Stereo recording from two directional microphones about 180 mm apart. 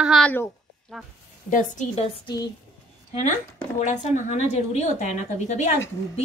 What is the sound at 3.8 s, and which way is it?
Speech, 40° left (ahead or behind).